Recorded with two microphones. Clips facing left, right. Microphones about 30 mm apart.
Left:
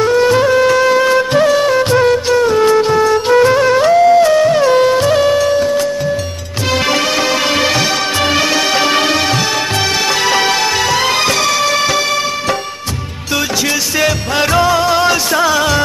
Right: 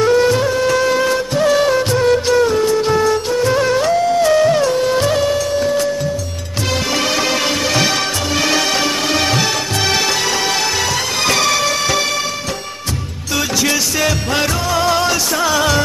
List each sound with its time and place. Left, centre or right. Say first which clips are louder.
0.0 s music: left 2 dB; centre
1.8 s music: left 5 dB; left
2.0 s music: left 2 dB; centre
5.2 s music: left 5 dB; left
5.6 s music: left 3 dB; centre
8.5 s music: left 2 dB; centre
10.2 s music: left 4 dB; left
11.2 s music: left 2 dB; centre
13.9 s music: left 3 dB; centre